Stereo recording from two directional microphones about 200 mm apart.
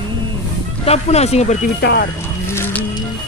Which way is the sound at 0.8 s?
30° left (ahead or behind).